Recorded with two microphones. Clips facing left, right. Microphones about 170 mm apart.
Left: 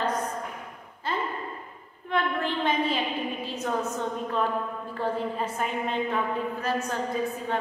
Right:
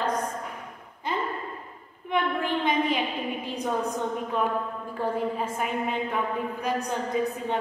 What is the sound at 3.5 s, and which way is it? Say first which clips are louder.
A woman's voice: right 1 dB; 15° right (ahead or behind).